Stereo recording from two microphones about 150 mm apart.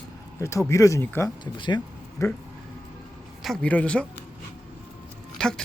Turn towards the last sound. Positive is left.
turn(degrees=5)  # may be behind; listen again after turning